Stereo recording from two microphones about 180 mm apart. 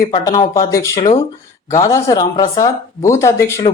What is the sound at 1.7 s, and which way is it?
Speech, 20° left (ahead or behind).